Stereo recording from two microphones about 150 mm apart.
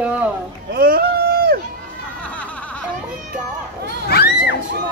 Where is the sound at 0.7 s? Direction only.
80° right.